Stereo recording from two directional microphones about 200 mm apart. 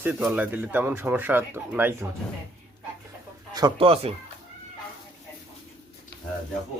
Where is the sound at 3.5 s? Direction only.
20° right (ahead or behind).